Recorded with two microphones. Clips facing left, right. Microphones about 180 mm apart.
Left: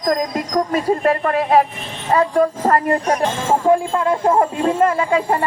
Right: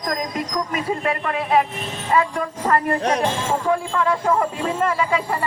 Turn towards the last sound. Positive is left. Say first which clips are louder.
# left 4 dB
turn(degrees=45)  # may be behind; listen again after turning